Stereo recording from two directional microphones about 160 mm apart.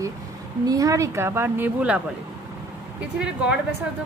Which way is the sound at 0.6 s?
20° right (ahead or behind).